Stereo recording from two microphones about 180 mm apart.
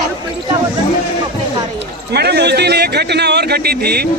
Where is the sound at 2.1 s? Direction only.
65° right (ahead or behind).